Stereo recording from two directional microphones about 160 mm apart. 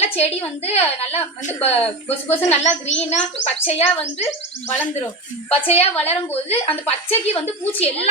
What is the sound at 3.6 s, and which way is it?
Speech, 40° left (ahead or behind).